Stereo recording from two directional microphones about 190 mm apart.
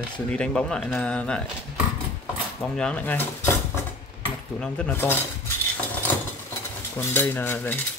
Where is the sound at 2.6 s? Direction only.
5° left (ahead or behind).